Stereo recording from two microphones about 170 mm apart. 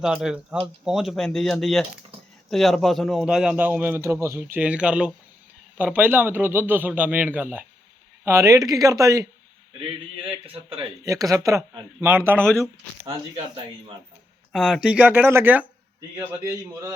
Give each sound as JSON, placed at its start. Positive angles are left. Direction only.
{"t": 0.0, "sound": "a man's voice", "side_deg": 0}
{"t": 11.0, "sound": "a man's voice", "side_deg": -20}
{"t": 12.4, "sound": "speech", "side_deg": 5}
{"t": 14.5, "sound": "a man's voice", "side_deg": -5}